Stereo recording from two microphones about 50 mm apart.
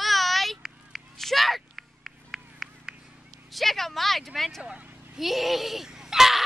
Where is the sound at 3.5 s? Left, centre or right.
Centre.